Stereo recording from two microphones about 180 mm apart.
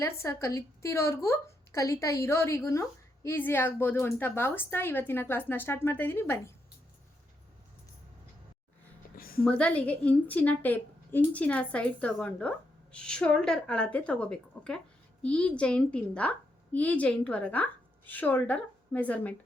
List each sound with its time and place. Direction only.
0.0 s speech: 15° left (ahead or behind)
9.1 s a sound: 55° left (ahead or behind)
9.4 s a woman's voice: 5° left (ahead or behind)